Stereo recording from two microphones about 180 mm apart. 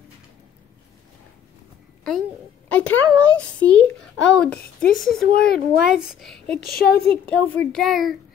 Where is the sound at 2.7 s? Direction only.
10° left (ahead or behind).